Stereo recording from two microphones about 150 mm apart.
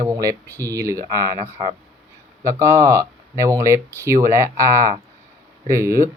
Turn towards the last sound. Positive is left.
turn(degrees=-20)  # may be behind; listen again after turning